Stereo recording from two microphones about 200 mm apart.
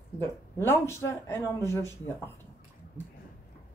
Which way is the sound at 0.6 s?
15° left (ahead or behind).